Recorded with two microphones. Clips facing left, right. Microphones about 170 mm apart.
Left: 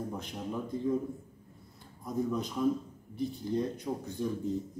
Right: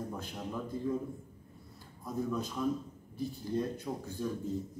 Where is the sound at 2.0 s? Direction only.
20° left (ahead or behind).